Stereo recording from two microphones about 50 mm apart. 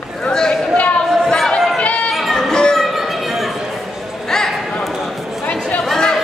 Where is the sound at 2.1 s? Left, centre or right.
Centre.